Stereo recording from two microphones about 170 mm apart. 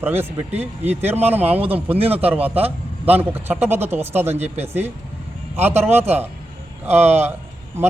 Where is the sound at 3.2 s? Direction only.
10° right (ahead or behind).